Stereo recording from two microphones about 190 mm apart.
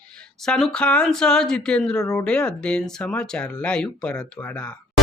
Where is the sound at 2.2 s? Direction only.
5° left (ahead or behind).